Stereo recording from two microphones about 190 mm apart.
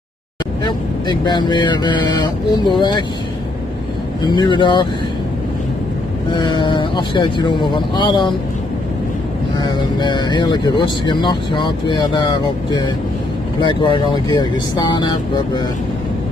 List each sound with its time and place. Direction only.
0.7 s speech: 25° left (ahead or behind)
4.2 s speech: 25° left (ahead or behind)
6.3 s speech: 25° left (ahead or behind)
9.7 s speech: 25° left (ahead or behind)
13.6 s speech: 25° left (ahead or behind)